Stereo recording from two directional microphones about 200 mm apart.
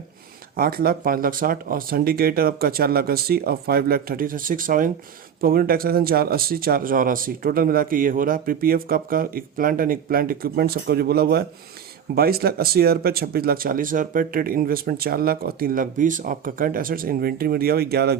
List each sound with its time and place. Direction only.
0.5 s speech: 45° right (ahead or behind)